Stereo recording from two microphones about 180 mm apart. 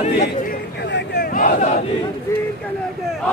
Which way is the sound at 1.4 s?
45° left (ahead or behind).